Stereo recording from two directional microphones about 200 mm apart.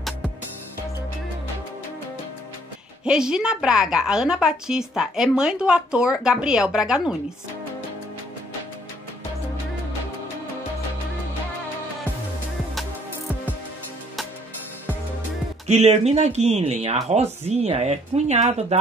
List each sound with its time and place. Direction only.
3.1 s speech: 5° right (ahead or behind)
15.6 s speech: 35° right (ahead or behind)